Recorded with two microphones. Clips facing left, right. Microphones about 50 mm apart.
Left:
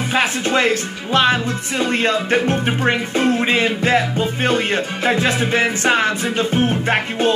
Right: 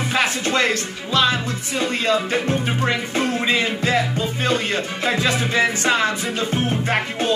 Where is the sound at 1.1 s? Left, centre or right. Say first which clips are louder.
Left 3 dB; left.